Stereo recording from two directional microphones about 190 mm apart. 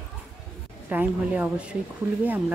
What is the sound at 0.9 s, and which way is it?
A woman's voice, 10° right (ahead or behind).